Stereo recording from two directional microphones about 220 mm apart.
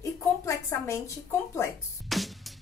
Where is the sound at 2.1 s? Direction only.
Centre (ahead or behind).